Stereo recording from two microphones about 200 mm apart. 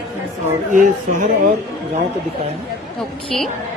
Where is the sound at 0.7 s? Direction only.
40° right (ahead or behind).